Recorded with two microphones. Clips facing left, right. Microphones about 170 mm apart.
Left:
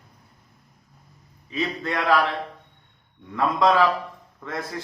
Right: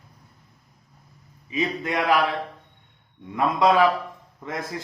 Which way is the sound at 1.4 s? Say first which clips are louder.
Right 1 dB; 15° right (ahead or behind).